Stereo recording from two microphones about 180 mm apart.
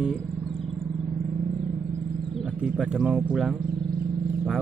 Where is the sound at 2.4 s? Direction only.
5° right (ahead or behind).